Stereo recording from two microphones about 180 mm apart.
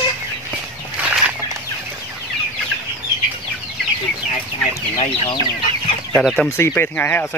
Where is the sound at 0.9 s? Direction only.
5° right (ahead or behind).